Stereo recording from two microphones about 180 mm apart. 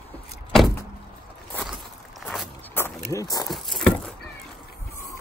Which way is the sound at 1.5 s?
Centre (ahead or behind).